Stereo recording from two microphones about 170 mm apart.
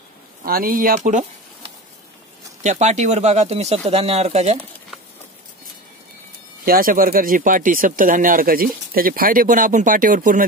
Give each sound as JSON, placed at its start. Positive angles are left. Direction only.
{"t": 0.4, "sound": "speech", "side_deg": -60}
{"t": 2.6, "sound": "speech", "side_deg": -45}
{"t": 6.6, "sound": "speech", "side_deg": -55}